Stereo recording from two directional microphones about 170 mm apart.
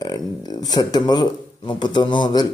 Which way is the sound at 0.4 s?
20° left (ahead or behind).